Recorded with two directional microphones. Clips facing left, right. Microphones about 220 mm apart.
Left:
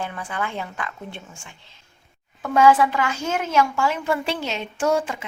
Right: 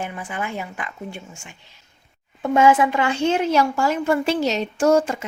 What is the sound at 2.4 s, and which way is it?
A woman's voice, 25° right (ahead or behind).